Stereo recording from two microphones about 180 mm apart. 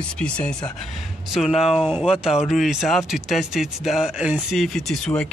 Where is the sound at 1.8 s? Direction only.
Centre (ahead or behind).